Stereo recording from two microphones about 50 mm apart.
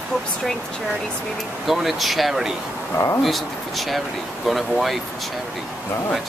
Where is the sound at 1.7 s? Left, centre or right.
Centre.